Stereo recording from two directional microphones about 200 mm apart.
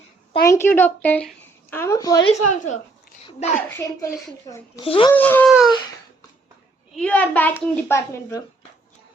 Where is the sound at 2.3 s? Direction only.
35° left (ahead or behind).